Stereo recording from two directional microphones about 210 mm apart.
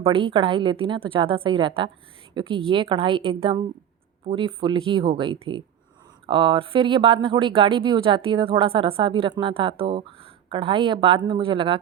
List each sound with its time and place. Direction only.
0.0 s speech: 25° right (ahead or behind)